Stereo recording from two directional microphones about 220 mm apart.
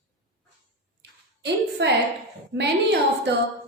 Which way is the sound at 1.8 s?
50° right (ahead or behind).